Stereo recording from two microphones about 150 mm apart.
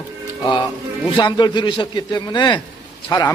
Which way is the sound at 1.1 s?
30° left (ahead or behind).